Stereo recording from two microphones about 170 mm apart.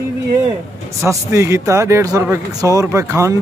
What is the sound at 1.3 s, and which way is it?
Speech, 15° right (ahead or behind).